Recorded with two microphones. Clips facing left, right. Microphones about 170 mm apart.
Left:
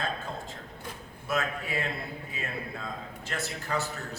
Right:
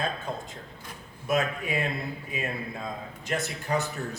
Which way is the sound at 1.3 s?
15° right (ahead or behind).